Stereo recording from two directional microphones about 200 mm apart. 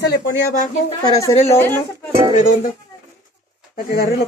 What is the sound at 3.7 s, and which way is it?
Speech, 45° left (ahead or behind).